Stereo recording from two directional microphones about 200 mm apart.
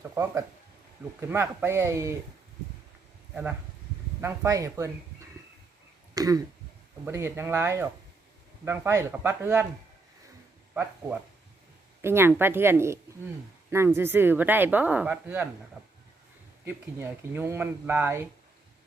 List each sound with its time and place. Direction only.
0.0 s speech: 15° right (ahead or behind)
4.2 s speech: 15° right (ahead or behind)
6.1 s speech: 20° right (ahead or behind)
12.0 s speech: 10° right (ahead or behind)
16.6 s speech: 10° right (ahead or behind)